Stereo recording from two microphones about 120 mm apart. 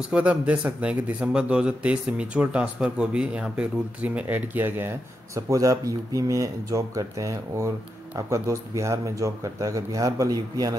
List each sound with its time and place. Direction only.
0.1 s a man's voice: 10° right (ahead or behind); by 10.8 s 30° right (ahead or behind)